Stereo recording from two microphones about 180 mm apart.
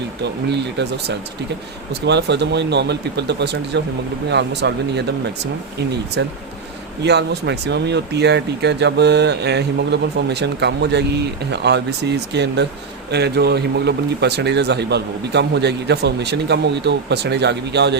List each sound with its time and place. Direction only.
0.2 s speech: 70° right (ahead or behind)
6.2 s speech: 75° right (ahead or behind)